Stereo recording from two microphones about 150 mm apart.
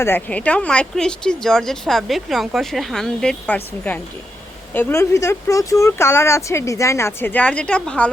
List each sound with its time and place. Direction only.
0.0 s speech: 10° left (ahead or behind)